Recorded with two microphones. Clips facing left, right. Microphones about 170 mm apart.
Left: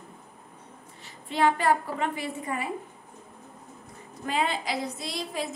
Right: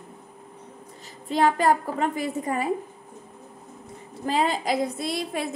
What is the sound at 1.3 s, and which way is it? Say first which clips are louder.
A woman's voice: right 3 dB; 40° right (ahead or behind).